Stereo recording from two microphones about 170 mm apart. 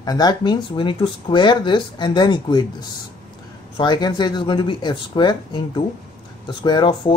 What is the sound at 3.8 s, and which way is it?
Speech, 25° left (ahead or behind).